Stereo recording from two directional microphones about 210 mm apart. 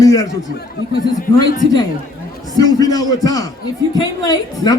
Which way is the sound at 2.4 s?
20° left (ahead or behind).